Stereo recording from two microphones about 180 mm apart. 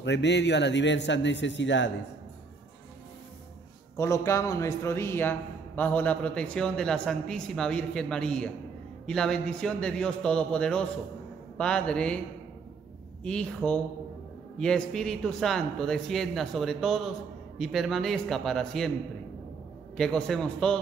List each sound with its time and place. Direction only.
0.0 s a man's voice: 75° left (ahead or behind)
3.9 s a man's voice: 15° left (ahead or behind)
13.2 s a man's voice: 5° left (ahead or behind)
20.0 s a man's voice: 5° left (ahead or behind)